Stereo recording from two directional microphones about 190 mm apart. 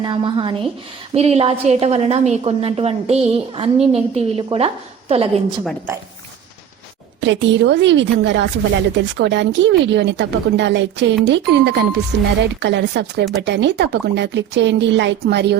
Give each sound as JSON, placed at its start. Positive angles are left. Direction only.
{"t": 0.0, "sound": "a woman's voice", "side_deg": -25}
{"t": 7.2, "sound": "a woman's voice", "side_deg": -70}